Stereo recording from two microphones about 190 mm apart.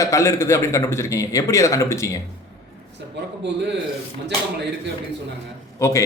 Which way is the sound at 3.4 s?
65° right (ahead or behind).